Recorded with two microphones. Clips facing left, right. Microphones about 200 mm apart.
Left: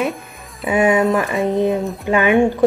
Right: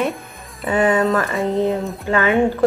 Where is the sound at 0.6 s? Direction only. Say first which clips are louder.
Left 2 dB; 15° left (ahead or behind).